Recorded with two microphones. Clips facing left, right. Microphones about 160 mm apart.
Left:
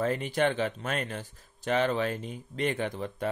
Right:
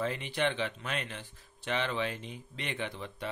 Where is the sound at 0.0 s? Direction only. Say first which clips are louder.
Left 5 dB; 45° left (ahead or behind).